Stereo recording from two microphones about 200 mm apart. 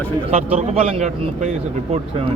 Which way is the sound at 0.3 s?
30° right (ahead or behind).